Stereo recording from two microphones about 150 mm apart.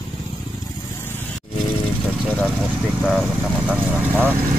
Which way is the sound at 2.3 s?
5° left (ahead or behind).